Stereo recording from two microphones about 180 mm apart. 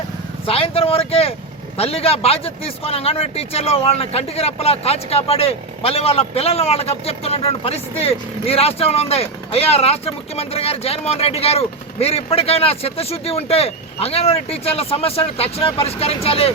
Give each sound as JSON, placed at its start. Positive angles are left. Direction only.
{"t": 0.4, "sound": "a man's voice", "side_deg": 30}